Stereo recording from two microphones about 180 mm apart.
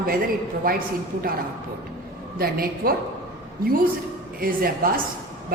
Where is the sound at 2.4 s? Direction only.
55° right (ahead or behind).